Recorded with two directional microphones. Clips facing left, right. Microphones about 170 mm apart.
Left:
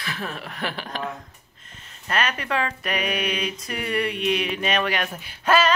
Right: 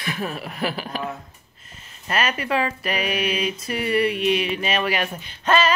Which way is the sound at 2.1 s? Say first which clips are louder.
Right 2 dB; 5° right (ahead or behind).